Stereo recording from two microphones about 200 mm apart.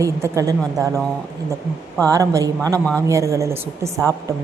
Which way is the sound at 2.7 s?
5° left (ahead or behind).